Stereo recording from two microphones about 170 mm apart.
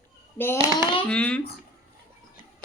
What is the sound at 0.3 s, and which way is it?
Speech, 15° left (ahead or behind).